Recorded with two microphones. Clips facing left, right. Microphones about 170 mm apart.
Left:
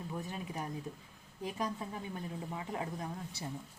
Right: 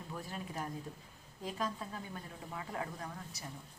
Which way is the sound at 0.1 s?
15° left (ahead or behind).